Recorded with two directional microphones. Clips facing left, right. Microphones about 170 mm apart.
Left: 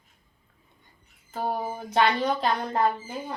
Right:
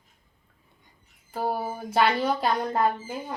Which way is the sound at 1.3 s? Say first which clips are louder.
Right 1 dB; 10° right (ahead or behind).